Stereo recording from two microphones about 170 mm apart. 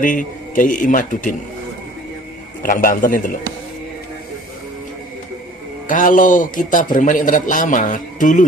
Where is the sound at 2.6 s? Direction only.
50° left (ahead or behind).